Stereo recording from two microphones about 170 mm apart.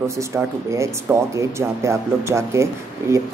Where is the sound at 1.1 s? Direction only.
15° right (ahead or behind).